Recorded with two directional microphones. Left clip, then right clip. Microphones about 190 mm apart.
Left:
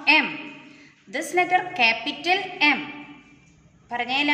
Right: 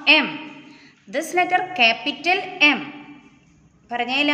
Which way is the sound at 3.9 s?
60° right (ahead or behind).